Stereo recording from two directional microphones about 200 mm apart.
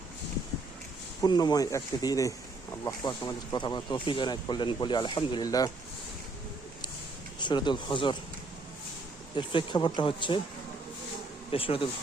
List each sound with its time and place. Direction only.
1.2 s speech: 20° left (ahead or behind)
7.3 s speech: 20° left (ahead or behind)
9.3 s speech: 25° left (ahead or behind)
11.5 s speech: 25° left (ahead or behind)